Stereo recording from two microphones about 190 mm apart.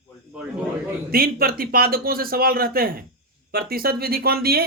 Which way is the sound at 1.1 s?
50° right (ahead or behind).